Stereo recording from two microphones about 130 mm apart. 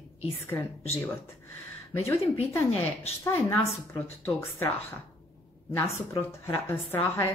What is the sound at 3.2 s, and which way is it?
A woman's voice, 15° left (ahead or behind).